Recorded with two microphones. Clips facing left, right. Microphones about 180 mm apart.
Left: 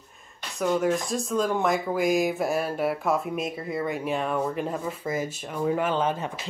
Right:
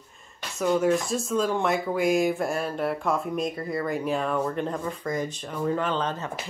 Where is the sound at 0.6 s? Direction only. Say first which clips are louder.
Right 1 dB; centre (ahead or behind).